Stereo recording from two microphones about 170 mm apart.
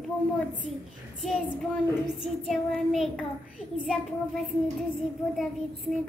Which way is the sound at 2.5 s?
Centre (ahead or behind).